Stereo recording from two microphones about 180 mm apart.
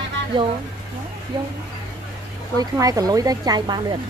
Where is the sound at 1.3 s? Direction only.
25° right (ahead or behind).